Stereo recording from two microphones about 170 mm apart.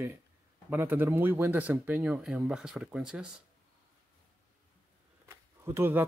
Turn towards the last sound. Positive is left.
turn(degrees=-15)  # may be behind; listen again after turning